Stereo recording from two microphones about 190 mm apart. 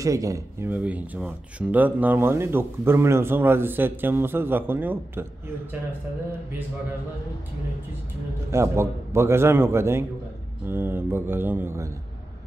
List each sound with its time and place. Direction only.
0.0 s speech: 15° right (ahead or behind)
8.5 s speech: 15° right (ahead or behind)